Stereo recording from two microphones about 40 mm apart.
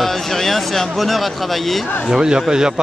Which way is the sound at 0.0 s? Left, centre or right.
Centre.